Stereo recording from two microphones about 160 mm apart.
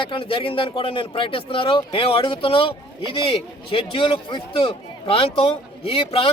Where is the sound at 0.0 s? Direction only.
35° left (ahead or behind).